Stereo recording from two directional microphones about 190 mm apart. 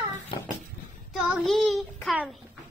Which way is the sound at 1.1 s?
Centre (ahead or behind).